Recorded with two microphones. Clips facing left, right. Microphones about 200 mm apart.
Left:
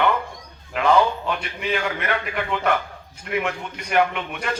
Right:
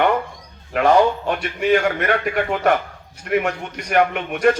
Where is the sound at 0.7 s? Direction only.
45° right (ahead or behind).